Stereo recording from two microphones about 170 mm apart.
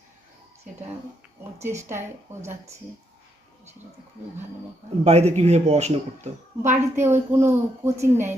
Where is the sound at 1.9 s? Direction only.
15° right (ahead or behind).